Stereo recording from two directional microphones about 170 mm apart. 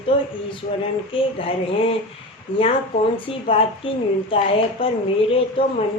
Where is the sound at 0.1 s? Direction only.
30° left (ahead or behind).